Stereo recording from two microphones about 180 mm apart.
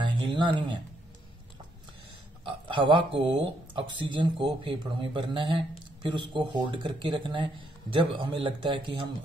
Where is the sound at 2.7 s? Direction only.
25° right (ahead or behind).